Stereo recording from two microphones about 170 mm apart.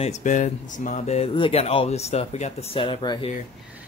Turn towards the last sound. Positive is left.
turn(degrees=30)  # may be behind; listen again after turning